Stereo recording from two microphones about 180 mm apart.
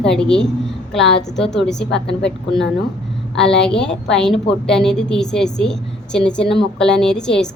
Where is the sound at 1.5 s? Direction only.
Centre (ahead or behind).